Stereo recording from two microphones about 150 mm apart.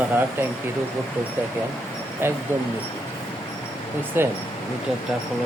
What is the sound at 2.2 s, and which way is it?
Speech, 15° right (ahead or behind).